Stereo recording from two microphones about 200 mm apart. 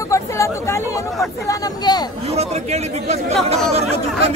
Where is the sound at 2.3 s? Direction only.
30° right (ahead or behind).